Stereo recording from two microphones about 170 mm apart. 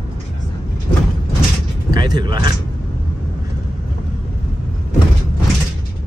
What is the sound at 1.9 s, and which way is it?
Speech, 25° right (ahead or behind).